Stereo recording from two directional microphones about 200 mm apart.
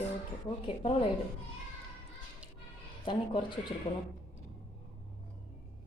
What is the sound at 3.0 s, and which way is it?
Speech, 25° left (ahead or behind).